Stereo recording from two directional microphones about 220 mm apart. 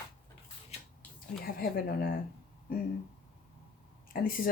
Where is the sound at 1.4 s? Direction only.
40° left (ahead or behind).